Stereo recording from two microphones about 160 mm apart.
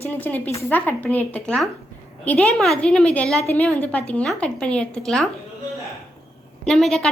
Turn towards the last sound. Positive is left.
turn(degrees=0)  # may be behind; listen again after turning